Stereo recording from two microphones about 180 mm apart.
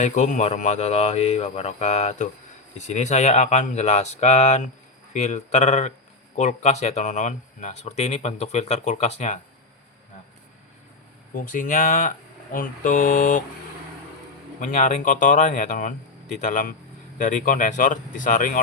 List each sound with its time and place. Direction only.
0.0 s speech: 40° left (ahead or behind)
11.3 s speech: 50° left (ahead or behind)
14.6 s speech: 45° left (ahead or behind)